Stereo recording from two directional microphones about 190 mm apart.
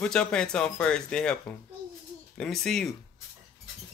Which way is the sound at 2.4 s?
5° left (ahead or behind).